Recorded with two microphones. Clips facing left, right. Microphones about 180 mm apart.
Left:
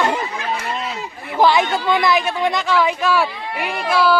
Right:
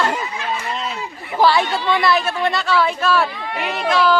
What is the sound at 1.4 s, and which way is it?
A woman's voice, 20° left (ahead or behind).